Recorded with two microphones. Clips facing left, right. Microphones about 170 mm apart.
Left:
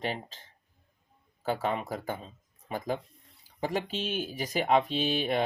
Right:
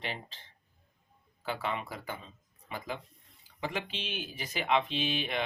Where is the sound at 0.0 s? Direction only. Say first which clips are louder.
Left 6 dB; 45° left (ahead or behind).